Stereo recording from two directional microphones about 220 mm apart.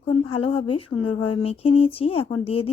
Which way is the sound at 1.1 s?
90° left.